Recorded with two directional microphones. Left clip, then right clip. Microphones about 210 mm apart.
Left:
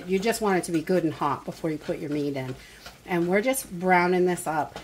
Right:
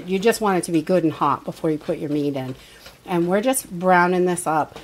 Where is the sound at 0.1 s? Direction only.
45° right (ahead or behind).